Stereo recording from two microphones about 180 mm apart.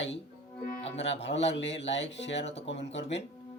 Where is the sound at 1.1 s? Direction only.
80° left.